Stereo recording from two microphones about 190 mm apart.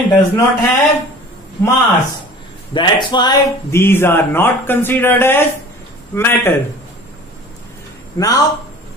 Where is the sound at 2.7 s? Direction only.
25° left (ahead or behind).